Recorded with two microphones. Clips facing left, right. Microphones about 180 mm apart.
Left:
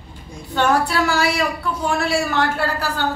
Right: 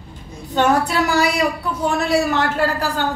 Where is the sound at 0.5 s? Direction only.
20° right (ahead or behind).